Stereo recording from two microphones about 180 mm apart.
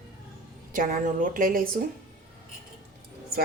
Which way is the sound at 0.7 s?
50° right (ahead or behind).